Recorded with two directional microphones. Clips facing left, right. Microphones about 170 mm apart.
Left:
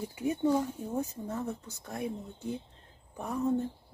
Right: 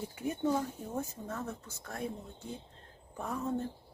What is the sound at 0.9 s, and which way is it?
Speech, 15° left (ahead or behind).